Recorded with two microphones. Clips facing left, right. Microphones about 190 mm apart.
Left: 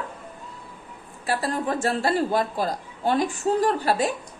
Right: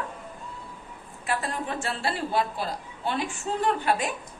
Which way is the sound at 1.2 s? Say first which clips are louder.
Left 5 dB; 35° left (ahead or behind).